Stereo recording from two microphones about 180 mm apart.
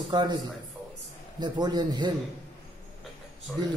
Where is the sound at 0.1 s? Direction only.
25° right (ahead or behind).